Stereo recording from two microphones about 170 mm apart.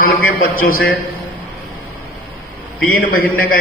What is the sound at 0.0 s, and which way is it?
Speech, 60° left (ahead or behind).